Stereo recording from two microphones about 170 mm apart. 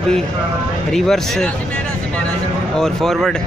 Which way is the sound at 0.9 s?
Centre (ahead or behind).